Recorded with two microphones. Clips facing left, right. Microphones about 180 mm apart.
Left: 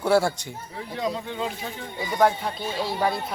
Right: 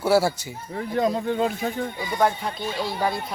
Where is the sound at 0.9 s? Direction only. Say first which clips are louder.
Right 6 dB; 50° right (ahead or behind).